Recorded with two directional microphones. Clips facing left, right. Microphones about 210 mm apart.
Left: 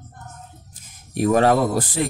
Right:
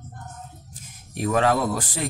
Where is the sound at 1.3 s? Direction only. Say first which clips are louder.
Left 4 dB; 40° left (ahead or behind).